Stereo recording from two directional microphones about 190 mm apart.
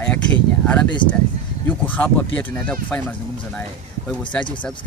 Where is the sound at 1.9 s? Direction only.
10° left (ahead or behind).